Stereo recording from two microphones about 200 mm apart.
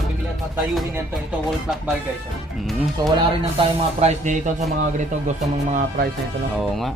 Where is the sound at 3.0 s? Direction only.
20° right (ahead or behind).